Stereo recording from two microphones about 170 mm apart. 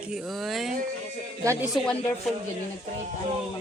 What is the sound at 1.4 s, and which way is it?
Speech, 15° right (ahead or behind).